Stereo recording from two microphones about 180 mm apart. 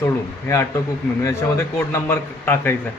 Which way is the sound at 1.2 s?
15° left (ahead or behind).